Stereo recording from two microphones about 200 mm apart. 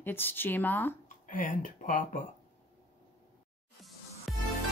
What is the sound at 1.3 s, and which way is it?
Speech, 40° left (ahead or behind).